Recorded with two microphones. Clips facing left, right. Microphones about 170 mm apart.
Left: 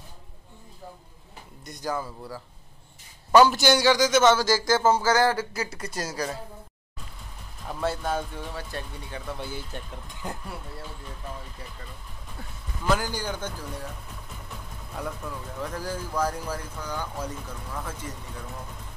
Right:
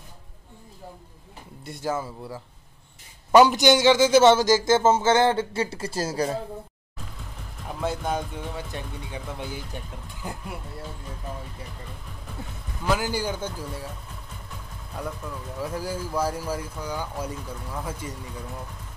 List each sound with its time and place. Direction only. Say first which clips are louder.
1.7 s a man's voice: right 2 dB; 25° right (ahead or behind)
7.8 s speech: even; 15° right (ahead or behind)
12.9 s speech: right 2 dB; 10° right (ahead or behind)
15.0 s speech: right 1 dB; centre (ahead or behind)